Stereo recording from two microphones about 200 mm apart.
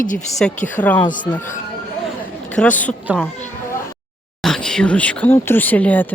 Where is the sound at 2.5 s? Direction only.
5° left (ahead or behind).